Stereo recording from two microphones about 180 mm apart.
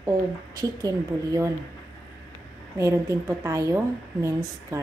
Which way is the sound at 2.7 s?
15° right (ahead or behind).